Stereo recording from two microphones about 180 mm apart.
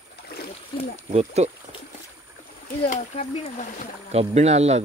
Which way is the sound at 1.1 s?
35° right (ahead or behind).